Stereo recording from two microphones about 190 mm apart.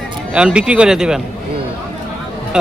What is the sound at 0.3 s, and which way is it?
Speech, 5° right (ahead or behind).